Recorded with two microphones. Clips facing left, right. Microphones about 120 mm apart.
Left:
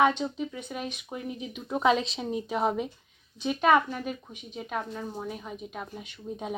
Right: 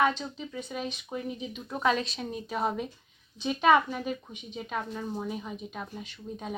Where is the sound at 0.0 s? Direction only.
15° left (ahead or behind).